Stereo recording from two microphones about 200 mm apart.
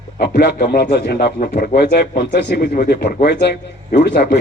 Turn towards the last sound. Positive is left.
turn(degrees=55)  # may be behind; listen again after turning